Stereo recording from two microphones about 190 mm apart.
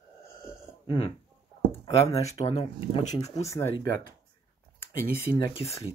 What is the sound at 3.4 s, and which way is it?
Speech, 15° left (ahead or behind).